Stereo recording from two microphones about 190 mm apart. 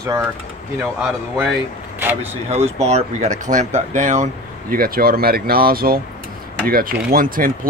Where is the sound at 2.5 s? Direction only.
35° right (ahead or behind).